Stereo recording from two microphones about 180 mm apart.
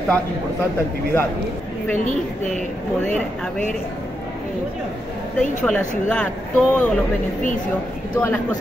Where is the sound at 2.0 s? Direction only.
40° left (ahead or behind).